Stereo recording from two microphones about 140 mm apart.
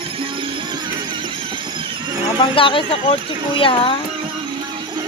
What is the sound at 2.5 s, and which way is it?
Speech, 40° left (ahead or behind).